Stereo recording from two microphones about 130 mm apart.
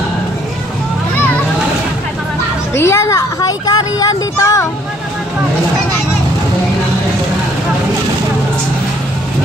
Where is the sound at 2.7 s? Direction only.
20° left (ahead or behind).